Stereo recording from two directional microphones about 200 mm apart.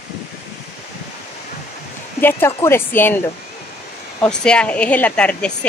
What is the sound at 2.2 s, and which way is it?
Speech, 10° left (ahead or behind).